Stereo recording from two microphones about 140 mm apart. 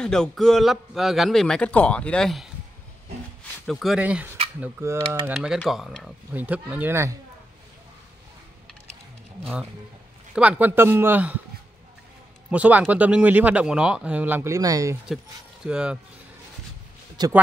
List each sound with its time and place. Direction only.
0.0 s a man's voice: 5° left (ahead or behind)
3.6 s a man's voice: centre (ahead or behind)
4.0 s speech: 10° right (ahead or behind)
5.3 s a man's voice: 5° right (ahead or behind)
6.3 s speech: 10° right (ahead or behind)
9.4 s speech: 5° right (ahead or behind)
12.4 s speech: 10° right (ahead or behind)
15.6 s a man's voice: 5° right (ahead or behind)
17.2 s speech: 30° right (ahead or behind)